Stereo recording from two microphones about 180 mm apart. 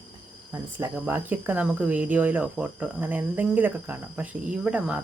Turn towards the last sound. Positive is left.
turn(degrees=-5)  # may be behind; listen again after turning